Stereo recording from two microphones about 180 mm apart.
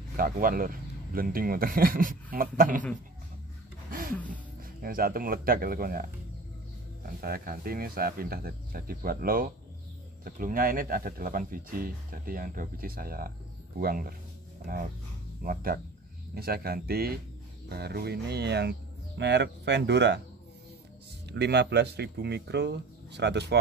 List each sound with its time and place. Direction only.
0.2 s speech: 50° right (ahead or behind)
4.8 s speech: 55° right (ahead or behind)
7.2 s speech: 55° right (ahead or behind)
15.4 s speech: 55° right (ahead or behind); by 20.2 s 70° right (ahead or behind)
21.3 s speech: 70° right (ahead or behind)